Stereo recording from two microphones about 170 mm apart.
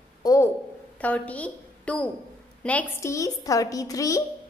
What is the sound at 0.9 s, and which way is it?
A woman's voice, 10° left (ahead or behind).